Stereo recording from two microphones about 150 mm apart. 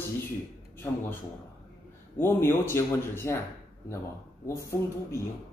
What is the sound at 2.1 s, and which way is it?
Speech, 15° left (ahead or behind).